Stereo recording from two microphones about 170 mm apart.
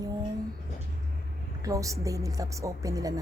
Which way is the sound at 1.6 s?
20° right (ahead or behind).